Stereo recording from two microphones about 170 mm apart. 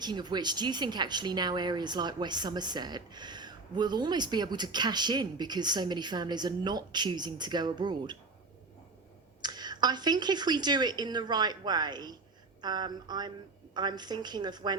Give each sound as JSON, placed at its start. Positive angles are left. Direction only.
{"t": 0.0, "sound": "a woman's voice", "side_deg": -25}
{"t": 9.4, "sound": "a woman's voice", "side_deg": -25}